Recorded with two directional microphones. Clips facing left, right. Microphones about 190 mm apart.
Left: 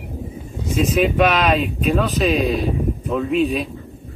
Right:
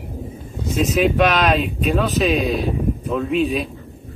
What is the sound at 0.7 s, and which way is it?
Speech, centre (ahead or behind).